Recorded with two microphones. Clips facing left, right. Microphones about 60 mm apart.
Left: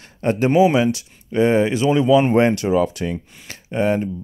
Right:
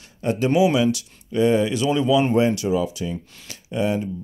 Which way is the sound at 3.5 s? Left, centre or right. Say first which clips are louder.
Left 4 dB; left.